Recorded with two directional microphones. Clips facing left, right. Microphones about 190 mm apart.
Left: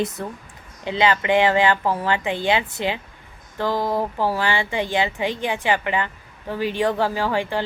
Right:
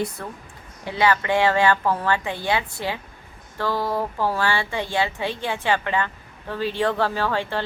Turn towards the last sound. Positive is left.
turn(degrees=15)  # may be behind; listen again after turning